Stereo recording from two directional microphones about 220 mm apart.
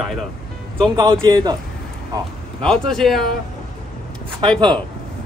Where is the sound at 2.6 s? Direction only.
Centre (ahead or behind).